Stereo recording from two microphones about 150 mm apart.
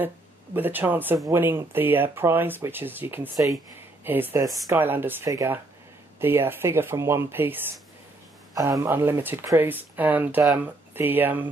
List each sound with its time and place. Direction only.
0.6 s speech: 10° right (ahead or behind)